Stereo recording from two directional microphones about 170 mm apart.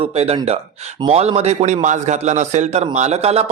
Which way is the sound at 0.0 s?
35° right (ahead or behind).